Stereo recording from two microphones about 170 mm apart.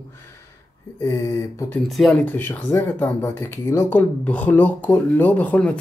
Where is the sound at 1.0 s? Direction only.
20° left (ahead or behind).